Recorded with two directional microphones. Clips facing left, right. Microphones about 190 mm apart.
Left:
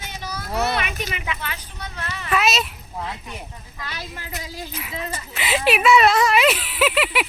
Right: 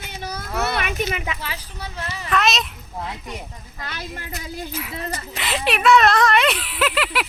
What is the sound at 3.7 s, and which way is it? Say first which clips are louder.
Speech: right 2 dB; 50° right (ahead or behind).